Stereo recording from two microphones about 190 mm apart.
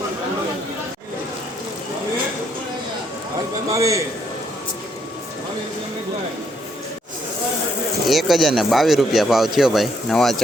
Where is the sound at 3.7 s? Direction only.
15° right (ahead or behind).